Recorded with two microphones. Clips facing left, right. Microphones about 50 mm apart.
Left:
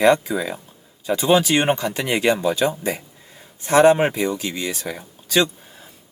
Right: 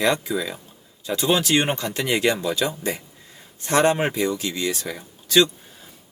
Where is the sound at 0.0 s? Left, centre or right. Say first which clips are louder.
Left 5 dB; left.